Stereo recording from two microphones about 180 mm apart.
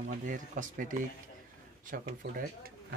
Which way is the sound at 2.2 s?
75° right (ahead or behind).